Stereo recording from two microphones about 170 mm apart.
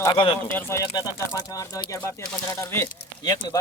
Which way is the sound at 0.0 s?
20° left (ahead or behind).